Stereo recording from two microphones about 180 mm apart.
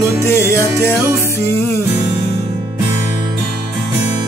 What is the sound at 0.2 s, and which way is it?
Music, 15° left (ahead or behind).